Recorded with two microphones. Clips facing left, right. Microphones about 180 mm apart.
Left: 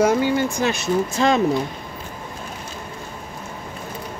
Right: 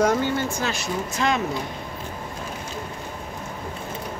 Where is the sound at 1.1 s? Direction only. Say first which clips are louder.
Left 4 dB; 30° left (ahead or behind).